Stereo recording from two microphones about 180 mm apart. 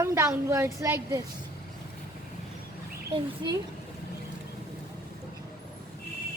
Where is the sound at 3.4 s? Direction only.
25° right (ahead or behind).